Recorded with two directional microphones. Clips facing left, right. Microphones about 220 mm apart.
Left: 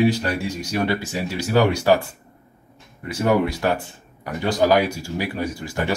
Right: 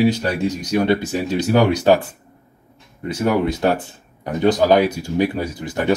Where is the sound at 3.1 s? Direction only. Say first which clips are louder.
Right 1 dB; 20° right (ahead or behind).